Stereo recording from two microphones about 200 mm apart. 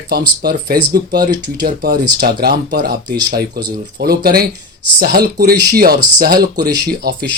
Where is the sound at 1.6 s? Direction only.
50° right (ahead or behind).